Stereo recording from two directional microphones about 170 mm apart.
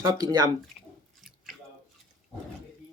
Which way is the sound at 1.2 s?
Centre (ahead or behind).